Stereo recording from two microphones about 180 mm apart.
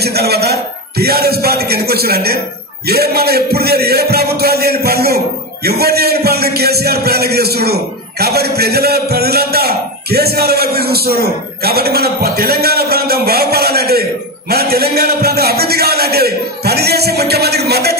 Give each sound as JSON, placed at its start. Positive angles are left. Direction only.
{"t": 0.0, "sound": "a man's voice", "side_deg": -65}